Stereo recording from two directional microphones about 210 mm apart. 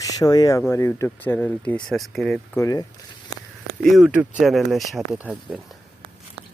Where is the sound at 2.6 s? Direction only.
15° left (ahead or behind).